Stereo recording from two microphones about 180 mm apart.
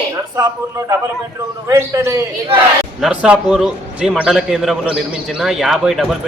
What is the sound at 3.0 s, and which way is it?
A man's voice, 5° right (ahead or behind).